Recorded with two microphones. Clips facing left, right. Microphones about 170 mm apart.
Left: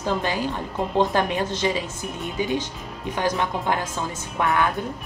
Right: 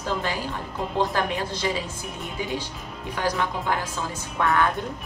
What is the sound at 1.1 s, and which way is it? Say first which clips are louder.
Speech: left 3 dB; 20° left (ahead or behind).